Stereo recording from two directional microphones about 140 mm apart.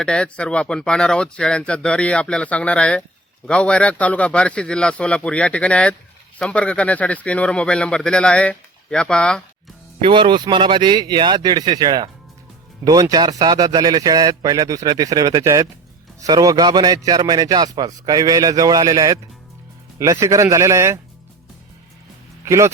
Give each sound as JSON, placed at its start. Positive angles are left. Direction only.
{"t": 0.0, "sound": "speech", "side_deg": 5}
{"t": 10.0, "sound": "a man's voice", "side_deg": -35}
{"t": 22.4, "sound": "speech", "side_deg": -20}